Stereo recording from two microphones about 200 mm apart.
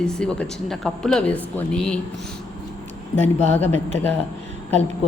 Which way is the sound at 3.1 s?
10° left (ahead or behind).